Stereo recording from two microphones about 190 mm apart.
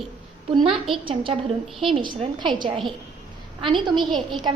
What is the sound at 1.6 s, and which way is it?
Speech, centre (ahead or behind).